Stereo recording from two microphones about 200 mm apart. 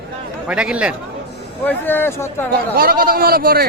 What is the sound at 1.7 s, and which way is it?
Speech, 10° left (ahead or behind).